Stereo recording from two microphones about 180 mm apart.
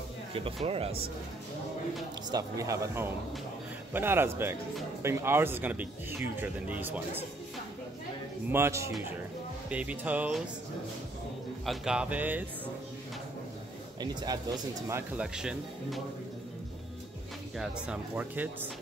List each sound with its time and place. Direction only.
0.3 s speech: 30° right (ahead or behind)
2.3 s speech: 15° right (ahead or behind)
8.5 s speech: 15° right (ahead or behind)
11.6 s speech: centre (ahead or behind)
13.9 s speech: 20° right (ahead or behind); by 16.0 s 5° right (ahead or behind)
17.6 s speech: 5° right (ahead or behind)